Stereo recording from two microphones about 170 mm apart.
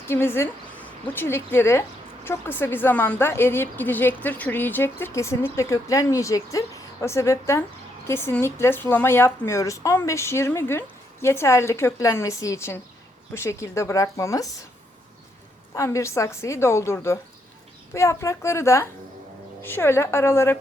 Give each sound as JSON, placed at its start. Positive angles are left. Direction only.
{"t": 0.1, "sound": "a woman's voice", "side_deg": 15}
{"t": 15.7, "sound": "speech", "side_deg": 15}